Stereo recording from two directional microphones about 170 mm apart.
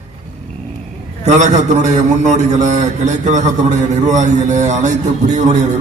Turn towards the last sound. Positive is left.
turn(degrees=-45)  # may be behind; listen again after turning